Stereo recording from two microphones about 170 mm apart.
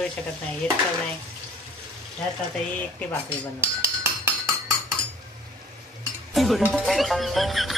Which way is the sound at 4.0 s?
15° right (ahead or behind).